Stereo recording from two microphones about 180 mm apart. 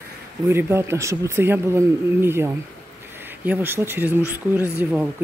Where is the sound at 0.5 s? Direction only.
15° right (ahead or behind).